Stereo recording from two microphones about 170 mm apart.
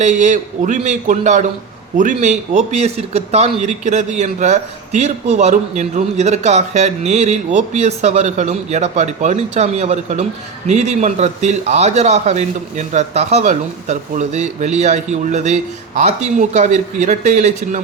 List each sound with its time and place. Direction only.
0.0 s speech: 45° right (ahead or behind)